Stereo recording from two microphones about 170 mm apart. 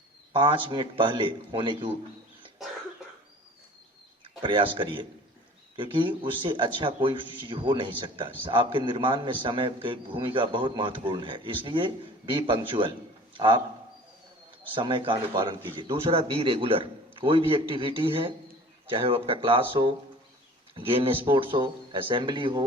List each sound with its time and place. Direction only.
0.3 s a man's voice: 30° right (ahead or behind)
4.2 s a man's voice: 30° right (ahead or behind)
14.8 s a man's voice: 30° right (ahead or behind)